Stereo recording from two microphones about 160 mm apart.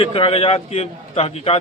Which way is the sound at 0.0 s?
35° left (ahead or behind).